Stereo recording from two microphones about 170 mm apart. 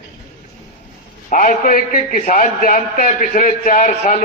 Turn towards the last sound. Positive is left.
turn(degrees=50)  # may be behind; listen again after turning